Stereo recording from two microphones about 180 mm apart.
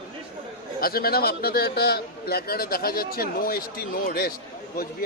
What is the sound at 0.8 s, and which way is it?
A man's voice, 55° left (ahead or behind).